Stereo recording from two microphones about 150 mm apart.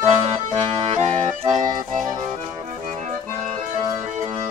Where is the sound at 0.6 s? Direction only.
45° right (ahead or behind).